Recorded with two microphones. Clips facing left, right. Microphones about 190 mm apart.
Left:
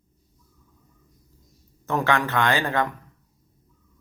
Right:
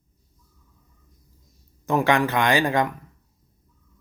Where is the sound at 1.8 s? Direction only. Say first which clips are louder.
Right 3 dB; 15° right (ahead or behind).